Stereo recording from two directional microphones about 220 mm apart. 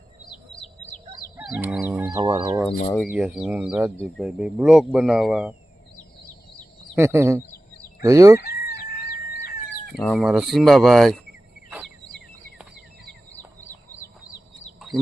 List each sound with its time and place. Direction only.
1.4 s fowl: 5° right (ahead or behind)
2.9 s speech: centre (ahead or behind)
6.9 s speech: 10° right (ahead or behind)
8.4 s fowl: 45° left (ahead or behind)
10.2 s speech: centre (ahead or behind)
14.0 s a sound: 10° left (ahead or behind)